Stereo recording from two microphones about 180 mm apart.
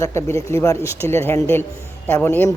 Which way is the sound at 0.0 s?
15° left (ahead or behind).